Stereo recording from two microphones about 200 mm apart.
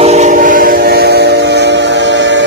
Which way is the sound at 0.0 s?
35° right (ahead or behind).